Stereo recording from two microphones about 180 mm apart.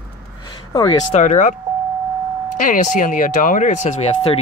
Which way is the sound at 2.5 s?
45° left (ahead or behind).